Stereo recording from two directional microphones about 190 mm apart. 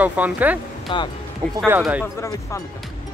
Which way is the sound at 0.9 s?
25° left (ahead or behind).